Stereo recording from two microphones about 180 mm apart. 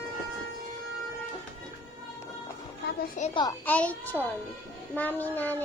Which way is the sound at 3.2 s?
45° left (ahead or behind).